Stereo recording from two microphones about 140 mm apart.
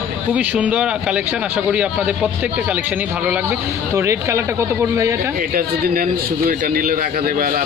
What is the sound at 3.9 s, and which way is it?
Speech, 20° right (ahead or behind).